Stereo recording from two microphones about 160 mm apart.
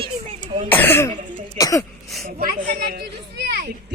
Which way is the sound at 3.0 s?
90° right.